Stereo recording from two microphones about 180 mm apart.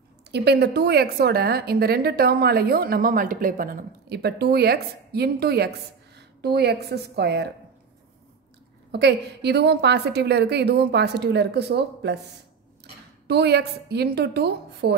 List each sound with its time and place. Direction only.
0.3 s a woman's voice: 65° right (ahead or behind)
8.9 s a woman's voice: 70° right (ahead or behind)
13.3 s a woman's voice: 65° right (ahead or behind)